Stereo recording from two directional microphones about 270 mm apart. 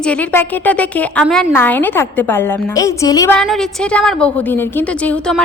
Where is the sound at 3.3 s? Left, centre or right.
Centre.